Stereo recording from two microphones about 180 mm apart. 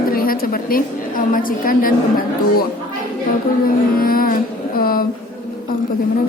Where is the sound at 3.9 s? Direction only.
55° left (ahead or behind).